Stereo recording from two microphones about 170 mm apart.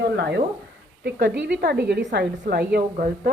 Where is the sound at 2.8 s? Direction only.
55° right (ahead or behind).